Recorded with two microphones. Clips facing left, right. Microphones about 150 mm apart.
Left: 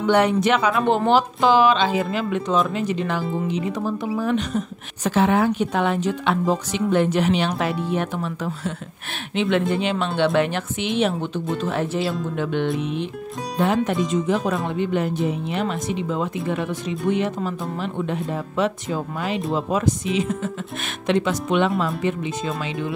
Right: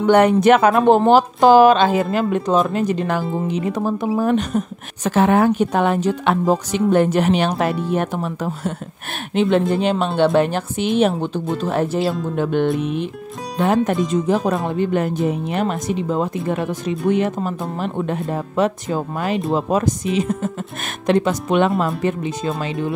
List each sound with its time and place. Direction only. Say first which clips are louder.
0.0 s speech: right 5 dB; 45° right (ahead or behind)
14.2 s speech: right 3 dB; 50° right (ahead or behind)